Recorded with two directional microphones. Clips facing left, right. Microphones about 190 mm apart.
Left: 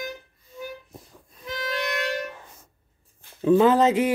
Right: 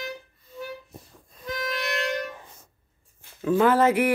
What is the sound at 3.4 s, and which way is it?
Speech, 20° left (ahead or behind).